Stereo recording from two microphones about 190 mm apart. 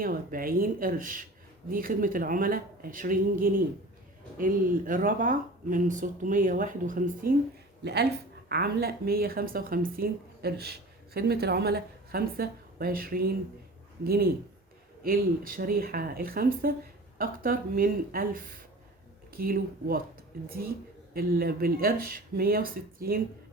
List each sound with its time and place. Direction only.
0.0 s speech: 50° right (ahead or behind)
8.4 s speech: 55° right (ahead or behind)